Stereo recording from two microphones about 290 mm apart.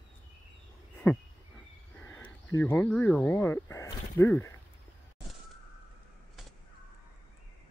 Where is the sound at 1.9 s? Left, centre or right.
Centre.